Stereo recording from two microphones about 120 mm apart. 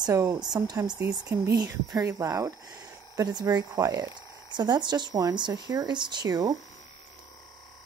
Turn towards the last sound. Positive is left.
turn(degrees=-30)  # may be behind; listen again after turning